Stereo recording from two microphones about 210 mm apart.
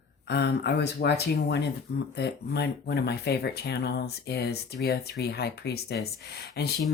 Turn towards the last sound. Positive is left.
turn(degrees=50)  # may be behind; listen again after turning